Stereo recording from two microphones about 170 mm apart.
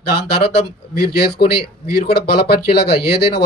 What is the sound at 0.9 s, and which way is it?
Speech, 65° left (ahead or behind).